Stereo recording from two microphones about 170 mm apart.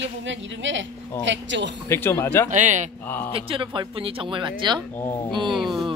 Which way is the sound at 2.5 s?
45° right (ahead or behind).